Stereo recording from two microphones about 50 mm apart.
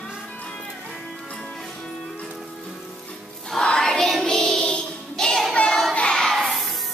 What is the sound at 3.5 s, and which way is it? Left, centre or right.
Music, centre.